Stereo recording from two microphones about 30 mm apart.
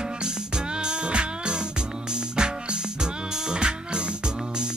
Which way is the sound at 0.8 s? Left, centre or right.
Right.